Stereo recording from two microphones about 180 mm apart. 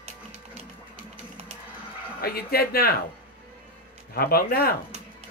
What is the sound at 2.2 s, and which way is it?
Speech, 55° left (ahead or behind).